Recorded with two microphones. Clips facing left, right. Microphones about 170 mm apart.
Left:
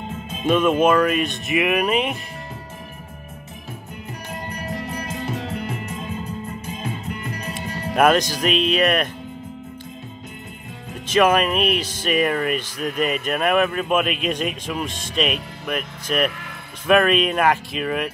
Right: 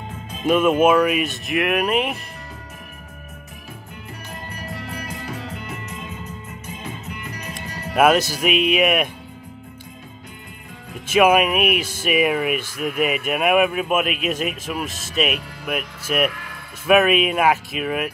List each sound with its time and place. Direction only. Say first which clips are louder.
0.5 s speech: right 1 dB; 10° right (ahead or behind)
4.8 s music: left 3 dB; 25° left (ahead or behind)
7.5 s speech: right 1 dB; 5° right (ahead or behind)
11.1 s speech: right 1 dB; 10° right (ahead or behind)